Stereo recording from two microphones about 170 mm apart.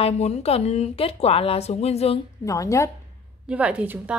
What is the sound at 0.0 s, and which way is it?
Speech, 40° left (ahead or behind).